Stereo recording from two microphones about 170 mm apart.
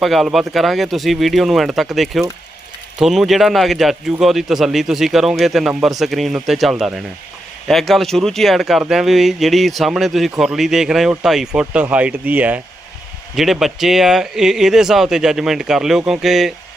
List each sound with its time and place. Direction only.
0.0 s speech: centre (ahead or behind)